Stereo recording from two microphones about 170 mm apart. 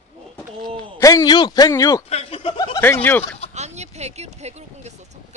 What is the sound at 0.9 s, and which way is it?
Speech, 20° left (ahead or behind).